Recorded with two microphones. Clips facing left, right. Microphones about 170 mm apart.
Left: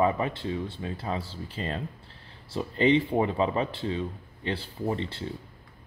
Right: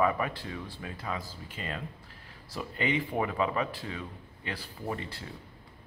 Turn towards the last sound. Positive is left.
turn(degrees=25)  # may be behind; listen again after turning